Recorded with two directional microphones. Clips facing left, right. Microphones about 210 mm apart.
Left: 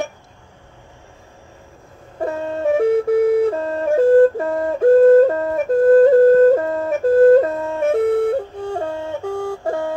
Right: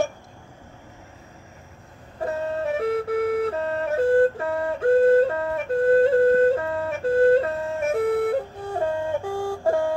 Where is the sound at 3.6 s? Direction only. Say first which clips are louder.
Left 6 dB; 35° left (ahead or behind).